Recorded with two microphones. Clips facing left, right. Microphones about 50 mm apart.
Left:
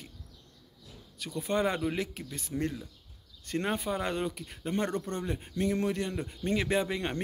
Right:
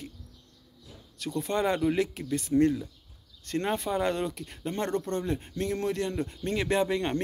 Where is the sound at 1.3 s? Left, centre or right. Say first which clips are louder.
Right 2 dB; centre.